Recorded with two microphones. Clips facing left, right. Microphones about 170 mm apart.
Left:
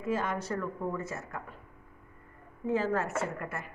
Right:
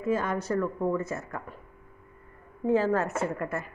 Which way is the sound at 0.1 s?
45° right (ahead or behind).